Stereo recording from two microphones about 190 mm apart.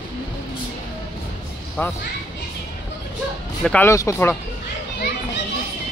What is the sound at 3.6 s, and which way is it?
Speech, 5° left (ahead or behind).